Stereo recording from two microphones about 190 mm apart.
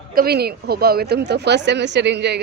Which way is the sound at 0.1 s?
55° right (ahead or behind).